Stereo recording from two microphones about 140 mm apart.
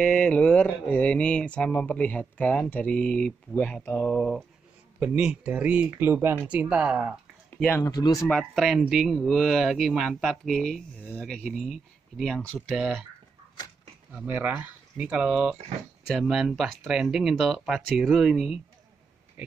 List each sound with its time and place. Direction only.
0.0 s speech: 5° left (ahead or behind)
5.0 s speech: 10° right (ahead or behind)
7.6 s speech: 15° left (ahead or behind)
7.9 s speech: 25° left (ahead or behind)
8.3 s speech: centre (ahead or behind)
14.1 s speech: 10° right (ahead or behind)